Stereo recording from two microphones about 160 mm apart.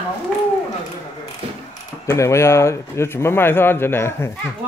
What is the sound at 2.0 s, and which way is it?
Speech, 20° left (ahead or behind).